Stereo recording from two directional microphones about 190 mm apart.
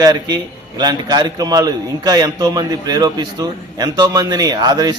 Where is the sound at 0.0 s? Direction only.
20° right (ahead or behind).